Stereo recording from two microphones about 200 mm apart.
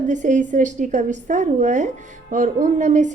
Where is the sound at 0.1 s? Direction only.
40° right (ahead or behind).